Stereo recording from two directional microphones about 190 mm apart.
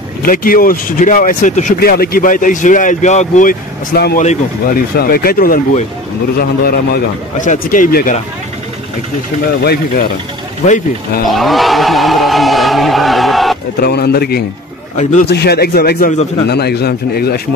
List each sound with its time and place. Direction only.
0.2 s speech: 50° left (ahead or behind)
4.2 s speech: 40° left (ahead or behind)
4.9 s speech: 50° left (ahead or behind)
9.6 s speech: 60° left (ahead or behind)
10.6 s speech: 40° left (ahead or behind)
11.2 s a sound: centre (ahead or behind)
13.7 s speech: 55° left (ahead or behind)